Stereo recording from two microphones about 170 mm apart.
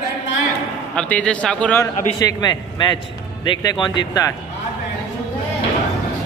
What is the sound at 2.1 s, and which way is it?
A man's voice, 25° left (ahead or behind).